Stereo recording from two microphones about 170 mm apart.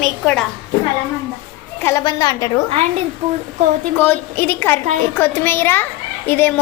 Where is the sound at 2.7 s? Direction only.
35° right (ahead or behind).